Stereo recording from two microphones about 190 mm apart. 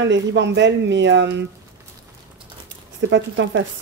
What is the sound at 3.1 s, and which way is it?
Speech, 75° right (ahead or behind).